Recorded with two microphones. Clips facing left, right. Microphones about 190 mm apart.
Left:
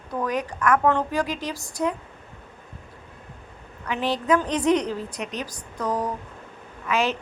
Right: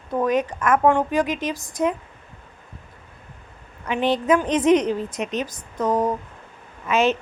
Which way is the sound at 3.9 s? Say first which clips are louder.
Right 3 dB; 20° right (ahead or behind).